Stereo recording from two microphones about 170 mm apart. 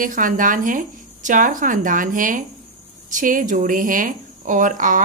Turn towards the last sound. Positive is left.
turn(degrees=-50)  # may be behind; listen again after turning